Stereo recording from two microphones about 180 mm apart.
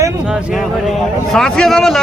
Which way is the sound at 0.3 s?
5° right (ahead or behind).